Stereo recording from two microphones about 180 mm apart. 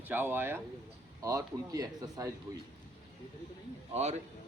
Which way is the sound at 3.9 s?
35° right (ahead or behind).